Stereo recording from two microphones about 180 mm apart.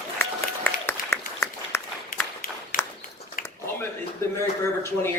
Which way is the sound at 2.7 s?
50° left (ahead or behind).